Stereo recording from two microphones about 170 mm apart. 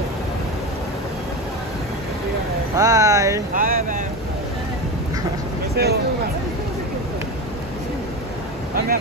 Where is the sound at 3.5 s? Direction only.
55° right (ahead or behind).